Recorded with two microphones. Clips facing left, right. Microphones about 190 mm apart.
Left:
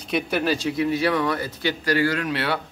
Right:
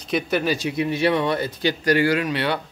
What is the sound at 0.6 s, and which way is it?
Speech, 25° right (ahead or behind).